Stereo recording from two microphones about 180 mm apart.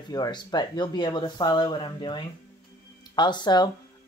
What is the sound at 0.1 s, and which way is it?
Speech, 20° left (ahead or behind).